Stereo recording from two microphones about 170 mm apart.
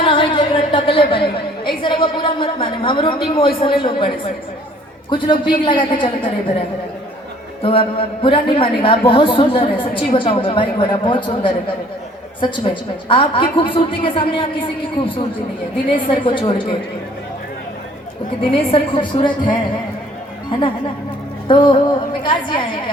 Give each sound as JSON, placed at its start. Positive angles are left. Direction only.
{"t": 0.0, "sound": "a woman's voice", "side_deg": 30}
{"t": 7.6, "sound": "a woman's voice", "side_deg": 35}
{"t": 15.9, "sound": "a woman's voice", "side_deg": 30}
{"t": 18.7, "sound": "a woman's voice", "side_deg": 30}
{"t": 21.4, "sound": "a woman's voice", "side_deg": 30}